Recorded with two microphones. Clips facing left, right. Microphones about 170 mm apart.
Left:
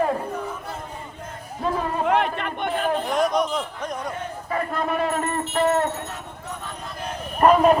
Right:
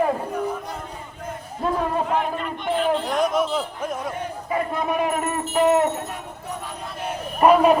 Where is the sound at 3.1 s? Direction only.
Centre (ahead or behind).